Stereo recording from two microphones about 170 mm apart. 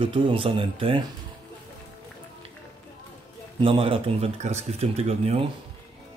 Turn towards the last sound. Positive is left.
turn(degrees=-35)  # may be behind; listen again after turning